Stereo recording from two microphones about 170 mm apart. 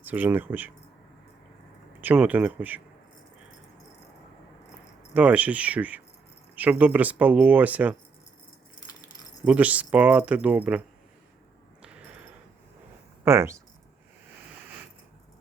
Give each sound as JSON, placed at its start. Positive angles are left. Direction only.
{"t": 0.0, "sound": "speech", "side_deg": -10}
{"t": 2.0, "sound": "speech", "side_deg": -10}
{"t": 5.1, "sound": "speech", "side_deg": -10}
{"t": 9.4, "sound": "speech", "side_deg": -10}
{"t": 11.8, "sound": "a sound", "side_deg": -5}
{"t": 13.2, "sound": "speech", "side_deg": -15}